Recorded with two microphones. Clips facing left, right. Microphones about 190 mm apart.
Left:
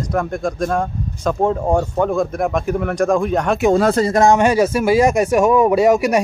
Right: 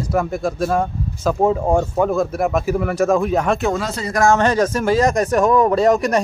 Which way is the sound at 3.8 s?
50° left (ahead or behind).